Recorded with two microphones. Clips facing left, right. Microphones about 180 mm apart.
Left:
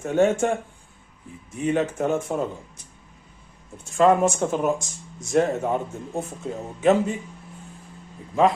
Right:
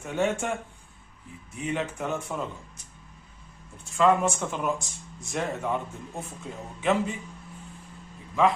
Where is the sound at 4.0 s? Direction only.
40° left (ahead or behind).